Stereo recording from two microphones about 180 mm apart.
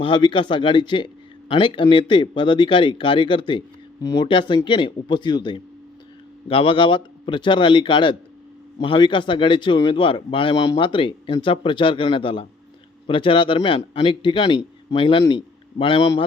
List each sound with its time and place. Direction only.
0.0 s speech: 25° left (ahead or behind)